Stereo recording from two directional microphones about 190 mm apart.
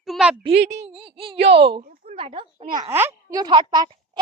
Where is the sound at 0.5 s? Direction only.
65° right (ahead or behind).